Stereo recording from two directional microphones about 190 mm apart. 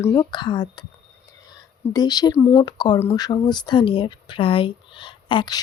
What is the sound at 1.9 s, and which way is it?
Speech, 20° left (ahead or behind).